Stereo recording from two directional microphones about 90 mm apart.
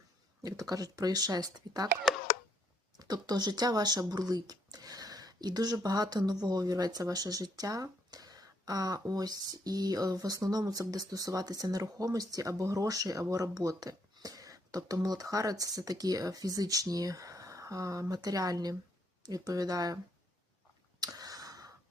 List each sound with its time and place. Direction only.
0.4 s speech: 40° right (ahead or behind)
3.0 s speech: 50° right (ahead or behind)
21.0 s a sound: 45° right (ahead or behind)